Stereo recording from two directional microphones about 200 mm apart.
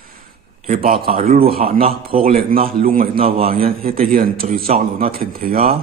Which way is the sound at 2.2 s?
45° right (ahead or behind).